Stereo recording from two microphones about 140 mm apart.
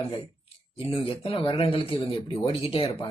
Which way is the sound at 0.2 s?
40° left (ahead or behind).